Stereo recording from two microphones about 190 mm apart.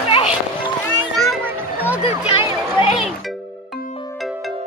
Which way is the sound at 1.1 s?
Centre (ahead or behind).